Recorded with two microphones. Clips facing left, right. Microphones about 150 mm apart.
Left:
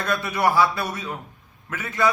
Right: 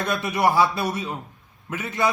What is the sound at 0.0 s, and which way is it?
A man's voice, 20° right (ahead or behind).